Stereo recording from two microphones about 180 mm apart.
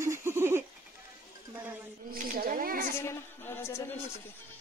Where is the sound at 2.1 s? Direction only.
55° right (ahead or behind).